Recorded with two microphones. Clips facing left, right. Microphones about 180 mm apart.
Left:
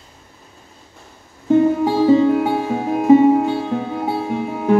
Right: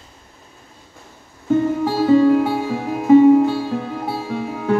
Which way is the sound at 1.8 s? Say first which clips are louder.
Left 1 dB; 15° left (ahead or behind).